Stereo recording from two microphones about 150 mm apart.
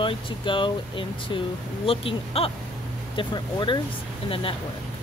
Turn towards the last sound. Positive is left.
turn(degrees=35)  # may be behind; listen again after turning